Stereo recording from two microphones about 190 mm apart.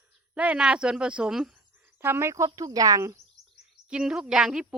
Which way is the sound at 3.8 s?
5° right (ahead or behind).